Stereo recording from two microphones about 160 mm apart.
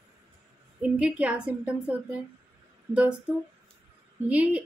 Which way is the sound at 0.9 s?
5° right (ahead or behind).